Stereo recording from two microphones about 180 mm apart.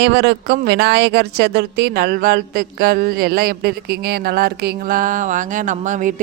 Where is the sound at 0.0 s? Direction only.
70° right (ahead or behind).